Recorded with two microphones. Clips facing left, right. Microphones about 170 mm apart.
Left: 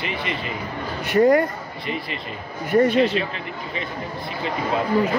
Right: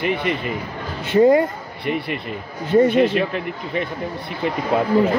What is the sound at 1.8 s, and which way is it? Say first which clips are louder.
Speech: right 6 dB; 60° right (ahead or behind).